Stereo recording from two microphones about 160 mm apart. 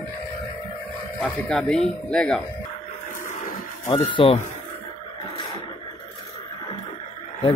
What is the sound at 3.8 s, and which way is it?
Speech, 30° left (ahead or behind).